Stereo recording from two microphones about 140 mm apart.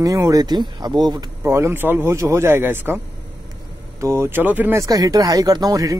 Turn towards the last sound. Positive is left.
turn(degrees=-25)  # may be behind; listen again after turning